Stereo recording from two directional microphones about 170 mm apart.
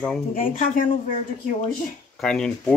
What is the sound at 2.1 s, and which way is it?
Speech, 5° left (ahead or behind).